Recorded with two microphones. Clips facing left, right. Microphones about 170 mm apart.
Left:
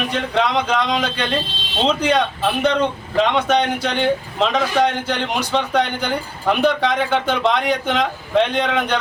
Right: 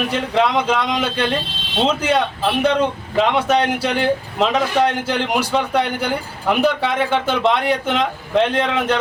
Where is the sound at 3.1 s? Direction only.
10° right (ahead or behind).